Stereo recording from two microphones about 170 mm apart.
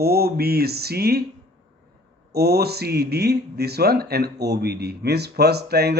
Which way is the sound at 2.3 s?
70° right (ahead or behind).